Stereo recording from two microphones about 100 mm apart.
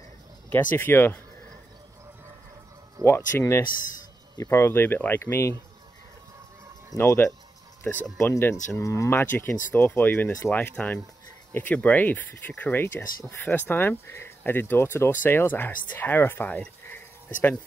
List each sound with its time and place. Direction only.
0.5 s speech: 20° left (ahead or behind)
3.1 s speech: 25° left (ahead or behind)
7.0 s speech: 25° left (ahead or behind)